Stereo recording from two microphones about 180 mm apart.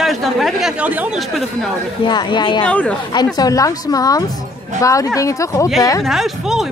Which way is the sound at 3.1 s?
20° left (ahead or behind).